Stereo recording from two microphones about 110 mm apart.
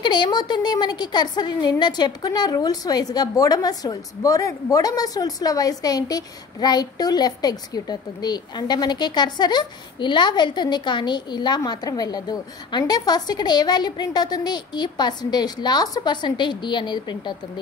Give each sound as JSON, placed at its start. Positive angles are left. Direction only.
{"t": 0.0, "sound": "a woman's voice", "side_deg": 45}